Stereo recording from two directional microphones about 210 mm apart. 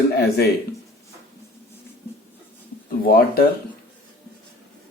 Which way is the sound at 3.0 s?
45° left (ahead or behind).